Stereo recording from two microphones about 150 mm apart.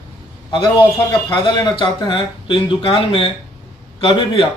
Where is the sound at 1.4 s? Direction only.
30° left (ahead or behind).